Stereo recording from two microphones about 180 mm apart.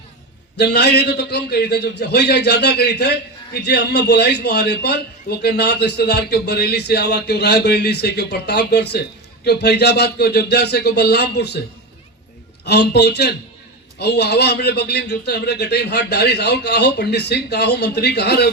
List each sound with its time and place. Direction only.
0.5 s a man's voice: 65° left (ahead or behind)
12.6 s a man's voice: 65° left (ahead or behind)